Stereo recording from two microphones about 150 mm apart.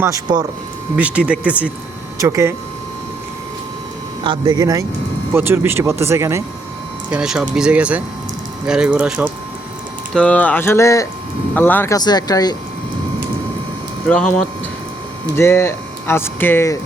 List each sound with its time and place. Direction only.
0.0 s a man's voice: 25° right (ahead or behind)
0.9 s speech: 10° right (ahead or behind)
2.1 s a man's voice: 20° right (ahead or behind)
4.2 s a man's voice: 30° right (ahead or behind)
7.1 s speech: 5° right (ahead or behind)
10.2 s speech: 10° left (ahead or behind)
11.9 s speech: 25° left (ahead or behind)
14.1 s speech: 10° left (ahead or behind)